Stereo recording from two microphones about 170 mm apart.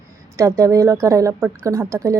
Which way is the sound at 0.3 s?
20° right (ahead or behind).